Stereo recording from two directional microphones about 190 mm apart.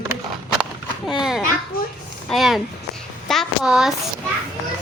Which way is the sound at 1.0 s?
5° right (ahead or behind).